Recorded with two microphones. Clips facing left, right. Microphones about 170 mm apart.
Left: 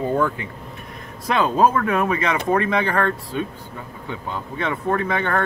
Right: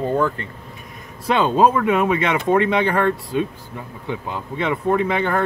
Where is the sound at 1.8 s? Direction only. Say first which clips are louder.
Right 3 dB; 15° right (ahead or behind).